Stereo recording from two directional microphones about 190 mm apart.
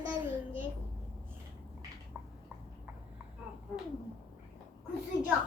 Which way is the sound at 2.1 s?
5° right (ahead or behind).